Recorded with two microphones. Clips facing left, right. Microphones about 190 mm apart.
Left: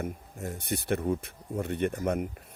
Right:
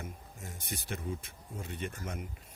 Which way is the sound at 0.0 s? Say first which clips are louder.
Left 10 dB; 60° left (ahead or behind).